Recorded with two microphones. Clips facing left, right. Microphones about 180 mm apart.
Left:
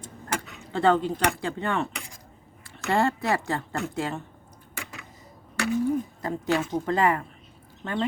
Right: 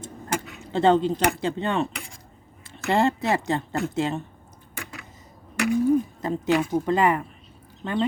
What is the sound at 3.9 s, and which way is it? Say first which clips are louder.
Cutlery: right 4 dB; 20° right (ahead or behind).